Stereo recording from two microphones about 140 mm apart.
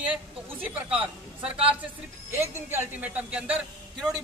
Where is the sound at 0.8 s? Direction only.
10° right (ahead or behind).